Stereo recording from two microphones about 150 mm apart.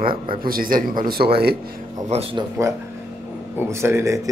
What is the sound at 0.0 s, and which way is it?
Speech, 75° right (ahead or behind).